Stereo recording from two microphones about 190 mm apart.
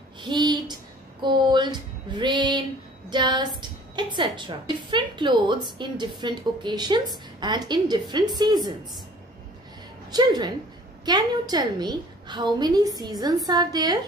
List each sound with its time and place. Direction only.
0.2 s a sound: 25° right (ahead or behind)
1.2 s female singing: 25° right (ahead or behind)
3.1 s a woman's voice: 25° right (ahead or behind)
10.1 s a woman's voice: 20° right (ahead or behind)